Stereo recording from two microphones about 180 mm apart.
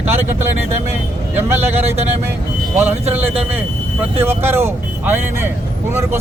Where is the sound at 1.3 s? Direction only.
10° right (ahead or behind).